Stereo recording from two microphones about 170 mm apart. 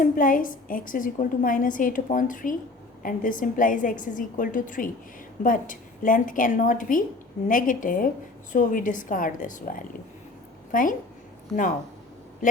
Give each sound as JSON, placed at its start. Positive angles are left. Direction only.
{"t": 0.0, "sound": "a woman's voice", "side_deg": 55}
{"t": 12.4, "sound": "speech", "side_deg": 50}